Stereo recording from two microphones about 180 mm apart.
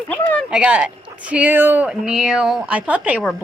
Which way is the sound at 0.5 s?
5° right (ahead or behind).